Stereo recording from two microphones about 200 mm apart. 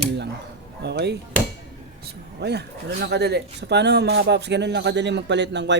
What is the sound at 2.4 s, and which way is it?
A man's voice, 55° right (ahead or behind).